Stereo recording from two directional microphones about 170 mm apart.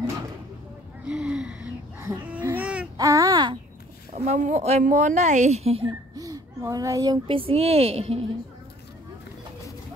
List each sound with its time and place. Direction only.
1.0 s gasp: 5° right (ahead or behind)
2.0 s a sound: 10° right (ahead or behind)
2.4 s baby cry: 10° right (ahead or behind)
3.0 s a sound: 20° right (ahead or behind)
4.1 s speech: 45° right (ahead or behind)
6.1 s speech: 20° right (ahead or behind); by 8.2 s 35° right (ahead or behind)